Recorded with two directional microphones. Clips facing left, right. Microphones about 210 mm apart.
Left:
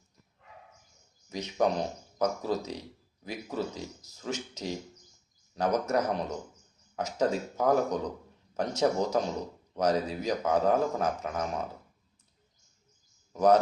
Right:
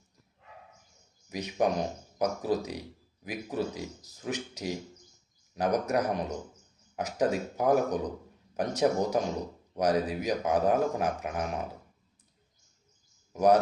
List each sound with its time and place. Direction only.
1.3 s speech: 15° right (ahead or behind)
13.3 s speech: 10° right (ahead or behind)